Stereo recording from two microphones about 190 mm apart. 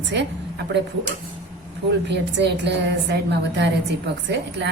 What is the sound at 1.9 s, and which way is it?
A woman's voice, 65° right (ahead or behind).